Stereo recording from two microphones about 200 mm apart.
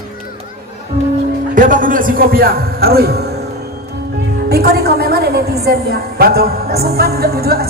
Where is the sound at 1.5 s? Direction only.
40° right (ahead or behind).